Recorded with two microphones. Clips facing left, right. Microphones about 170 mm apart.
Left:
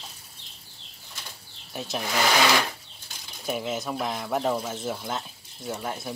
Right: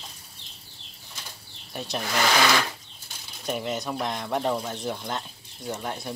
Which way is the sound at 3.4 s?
Centre (ahead or behind).